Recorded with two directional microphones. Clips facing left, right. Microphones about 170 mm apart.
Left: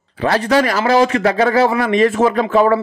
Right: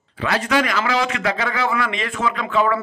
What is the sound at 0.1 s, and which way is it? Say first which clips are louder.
A man's voice: left 6 dB; 35° left (ahead or behind).